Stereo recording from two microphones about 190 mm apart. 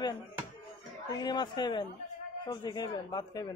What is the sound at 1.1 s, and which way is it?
Speech, 20° left (ahead or behind).